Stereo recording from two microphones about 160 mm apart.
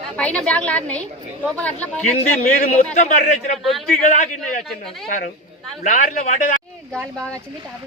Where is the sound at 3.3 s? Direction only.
45° left (ahead or behind).